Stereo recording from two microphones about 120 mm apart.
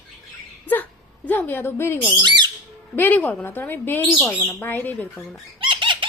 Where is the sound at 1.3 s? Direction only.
15° left (ahead or behind).